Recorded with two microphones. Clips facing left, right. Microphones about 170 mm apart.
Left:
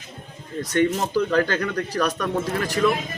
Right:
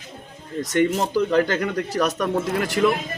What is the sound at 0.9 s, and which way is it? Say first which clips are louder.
A man's voice: right 1 dB; 15° right (ahead or behind).